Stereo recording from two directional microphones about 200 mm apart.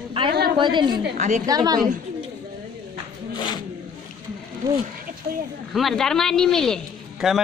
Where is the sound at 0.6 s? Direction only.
25° right (ahead or behind).